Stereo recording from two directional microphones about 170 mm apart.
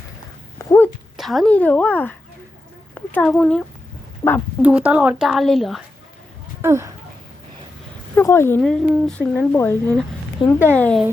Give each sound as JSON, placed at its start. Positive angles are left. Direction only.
{"t": 0.6, "sound": "dog", "side_deg": 15}
{"t": 1.1, "sound": "a woman's voice", "side_deg": 0}
{"t": 4.2, "sound": "speech", "side_deg": 20}
{"t": 4.6, "sound": "a woman's voice", "side_deg": -10}
{"t": 6.6, "sound": "speech", "side_deg": -15}
{"t": 8.1, "sound": "a woman's voice", "side_deg": 15}
{"t": 8.6, "sound": "a woman's voice", "side_deg": 0}